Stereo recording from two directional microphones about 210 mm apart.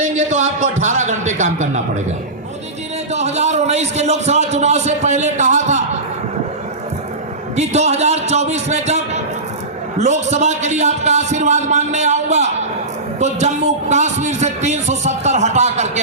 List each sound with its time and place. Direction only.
0.0 s a sound: 35° right (ahead or behind)
0.6 s a man's voice: 35° right (ahead or behind)
3.1 s a man's voice: 30° right (ahead or behind)
7.5 s a man's voice: 30° right (ahead or behind)